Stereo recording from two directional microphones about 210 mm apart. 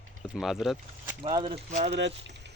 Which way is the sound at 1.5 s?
40° right (ahead or behind).